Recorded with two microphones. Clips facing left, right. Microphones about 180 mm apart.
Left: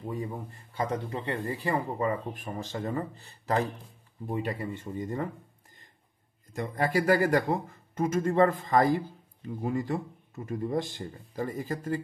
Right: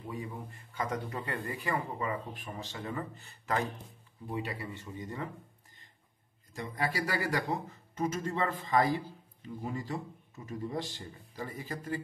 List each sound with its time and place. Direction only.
0.0 s speech: 40° left (ahead or behind)
4.3 s speech: 45° left (ahead or behind)
6.5 s speech: 50° left (ahead or behind)